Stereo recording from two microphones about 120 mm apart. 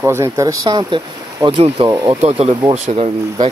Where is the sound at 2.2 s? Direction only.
60° right (ahead or behind).